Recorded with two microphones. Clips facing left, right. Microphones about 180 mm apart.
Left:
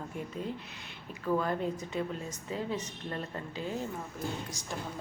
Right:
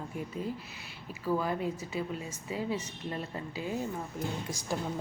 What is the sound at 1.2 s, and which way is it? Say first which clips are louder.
A woman's voice: even; 5° right (ahead or behind).